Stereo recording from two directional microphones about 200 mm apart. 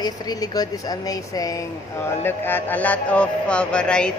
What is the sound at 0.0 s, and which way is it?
Speech, 20° left (ahead or behind).